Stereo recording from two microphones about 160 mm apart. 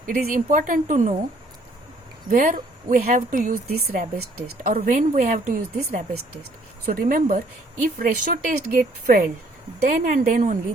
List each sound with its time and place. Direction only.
0.1 s a woman's voice: 55° right (ahead or behind)
2.3 s a woman's voice: 60° right (ahead or behind)